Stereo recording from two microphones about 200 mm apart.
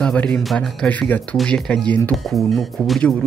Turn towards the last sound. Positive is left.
turn(degrees=0)  # may be behind; listen again after turning